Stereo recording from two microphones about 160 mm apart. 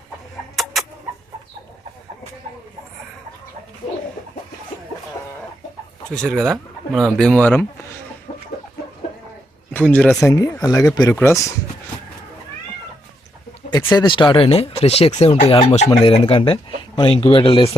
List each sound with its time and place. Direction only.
0.5 s chicken: centre (ahead or behind)
6.1 s speech: 5° left (ahead or behind)
9.7 s speech: 10° left (ahead or behind)
10.2 s speech: 20° left (ahead or behind)
13.9 s speech: 30° left (ahead or behind)